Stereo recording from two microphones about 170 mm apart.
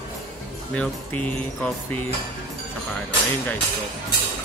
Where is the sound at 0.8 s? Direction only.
10° left (ahead or behind).